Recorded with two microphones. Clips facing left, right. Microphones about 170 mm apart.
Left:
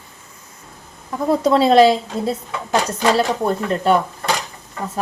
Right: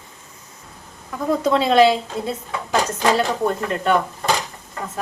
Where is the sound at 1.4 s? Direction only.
35° left (ahead or behind).